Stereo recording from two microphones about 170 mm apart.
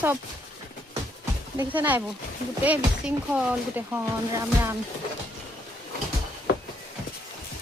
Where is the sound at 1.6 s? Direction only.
10° right (ahead or behind).